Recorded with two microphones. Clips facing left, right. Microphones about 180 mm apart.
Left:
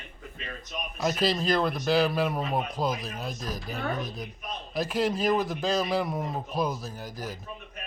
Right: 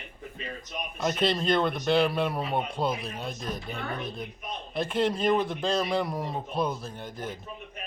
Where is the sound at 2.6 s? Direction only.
30° right (ahead or behind).